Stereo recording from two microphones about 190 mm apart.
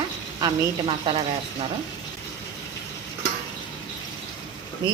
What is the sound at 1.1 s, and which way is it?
Speech, 25° right (ahead or behind).